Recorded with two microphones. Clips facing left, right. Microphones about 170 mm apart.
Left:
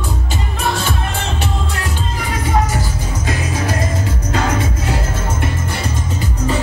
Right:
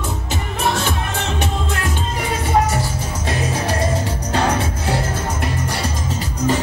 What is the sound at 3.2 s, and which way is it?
Music, 30° right (ahead or behind).